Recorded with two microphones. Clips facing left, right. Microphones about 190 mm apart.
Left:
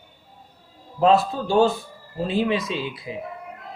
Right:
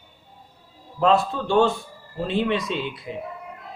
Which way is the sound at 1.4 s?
35° left (ahead or behind).